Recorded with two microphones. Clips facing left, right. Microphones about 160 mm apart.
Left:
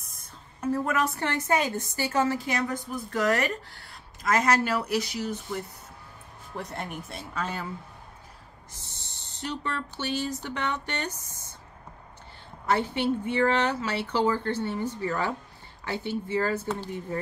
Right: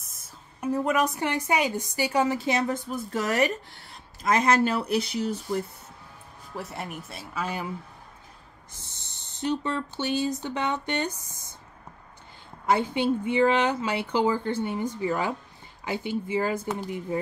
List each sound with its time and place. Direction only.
0.0 s a sound: centre (ahead or behind)
0.6 s a woman's voice: 15° right (ahead or behind); by 5.6 s 30° right (ahead or behind)
6.5 s speech: 5° right (ahead or behind)
9.4 s speech: 20° right (ahead or behind)
12.6 s speech: 15° right (ahead or behind)